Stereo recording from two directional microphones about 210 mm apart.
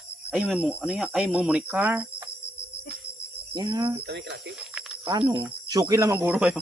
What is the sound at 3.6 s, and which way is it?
Speech, 20° right (ahead or behind).